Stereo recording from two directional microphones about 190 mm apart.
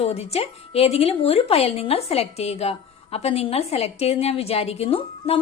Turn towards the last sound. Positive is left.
turn(degrees=30)  # may be behind; listen again after turning